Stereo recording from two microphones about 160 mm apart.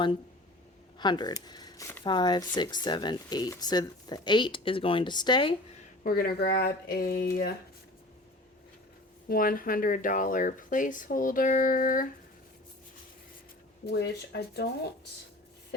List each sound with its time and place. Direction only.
0.9 s speech: 30° left (ahead or behind)
2.0 s speech: 25° left (ahead or behind)
6.0 s speech: 65° left (ahead or behind)
9.3 s speech: 65° left (ahead or behind)
13.8 s speech: 90° left